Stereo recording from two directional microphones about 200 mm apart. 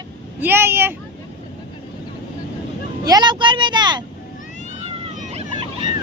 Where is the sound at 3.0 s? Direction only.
20° right (ahead or behind).